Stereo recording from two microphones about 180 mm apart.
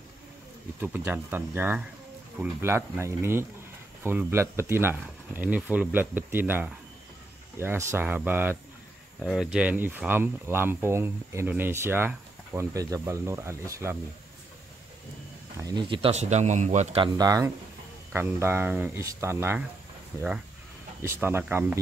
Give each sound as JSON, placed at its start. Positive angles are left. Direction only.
{"t": 0.7, "sound": "speech", "side_deg": -10}
{"t": 15.6, "sound": "speech", "side_deg": -25}
{"t": 17.0, "sound": "speech", "side_deg": -20}